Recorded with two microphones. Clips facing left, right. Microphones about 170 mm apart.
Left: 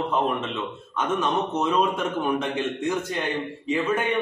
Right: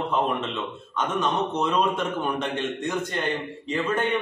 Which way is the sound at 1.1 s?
5° left (ahead or behind).